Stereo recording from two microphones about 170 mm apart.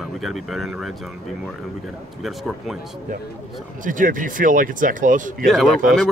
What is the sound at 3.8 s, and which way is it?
Speech, 50° right (ahead or behind).